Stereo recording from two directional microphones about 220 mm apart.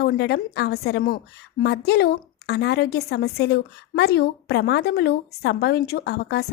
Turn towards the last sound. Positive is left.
turn(degrees=45)  # may be behind; listen again after turning